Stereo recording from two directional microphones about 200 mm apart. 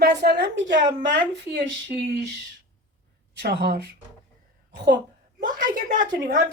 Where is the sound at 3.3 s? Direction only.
55° right (ahead or behind).